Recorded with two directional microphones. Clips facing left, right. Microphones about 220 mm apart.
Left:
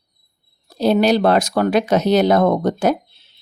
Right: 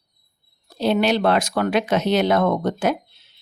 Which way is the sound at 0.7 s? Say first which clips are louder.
Left 4 dB; 40° left (ahead or behind).